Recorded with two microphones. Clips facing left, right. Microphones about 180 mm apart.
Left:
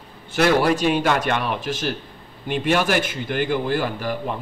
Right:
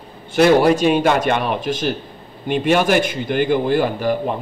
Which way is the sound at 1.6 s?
5° left (ahead or behind).